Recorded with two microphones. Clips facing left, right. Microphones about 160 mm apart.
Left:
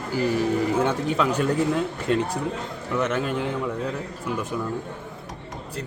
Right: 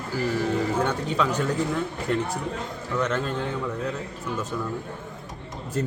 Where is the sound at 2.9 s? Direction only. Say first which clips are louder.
Left 2 dB; 10° left (ahead or behind).